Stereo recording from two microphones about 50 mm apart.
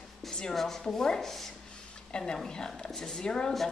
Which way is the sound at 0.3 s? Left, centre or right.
Centre.